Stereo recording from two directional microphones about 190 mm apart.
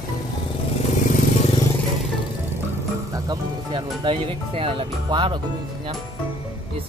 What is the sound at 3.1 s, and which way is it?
Music, 25° right (ahead or behind).